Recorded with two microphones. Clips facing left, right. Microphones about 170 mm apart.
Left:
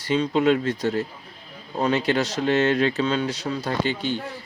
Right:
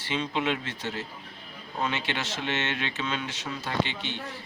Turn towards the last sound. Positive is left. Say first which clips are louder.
# left 6 dB
turn(degrees=40)  # may be behind; listen again after turning